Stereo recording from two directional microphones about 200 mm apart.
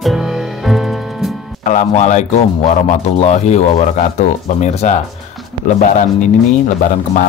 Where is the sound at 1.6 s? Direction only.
35° left (ahead or behind).